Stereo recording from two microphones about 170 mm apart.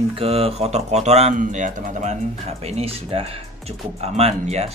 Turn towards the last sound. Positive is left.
turn(degrees=-40)  # may be behind; listen again after turning